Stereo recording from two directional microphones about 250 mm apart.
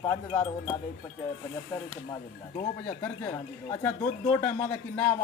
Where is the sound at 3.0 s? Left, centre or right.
Centre.